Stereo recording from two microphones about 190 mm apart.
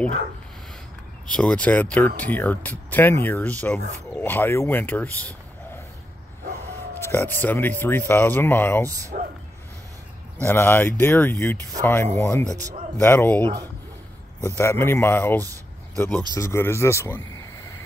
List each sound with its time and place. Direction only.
1.3 s speech: 5° left (ahead or behind)
7.0 s speech: 15° left (ahead or behind)
9.1 s speech: 45° right (ahead or behind)
10.3 s speech: 10° left (ahead or behind)
12.4 s speech: 20° right (ahead or behind)
13.0 s speech: 10° left (ahead or behind)
15.4 s a sound: 15° right (ahead or behind)
16.3 s speech: 15° left (ahead or behind)